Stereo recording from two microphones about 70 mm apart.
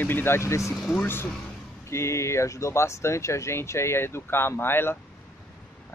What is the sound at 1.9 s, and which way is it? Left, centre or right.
Speech, left.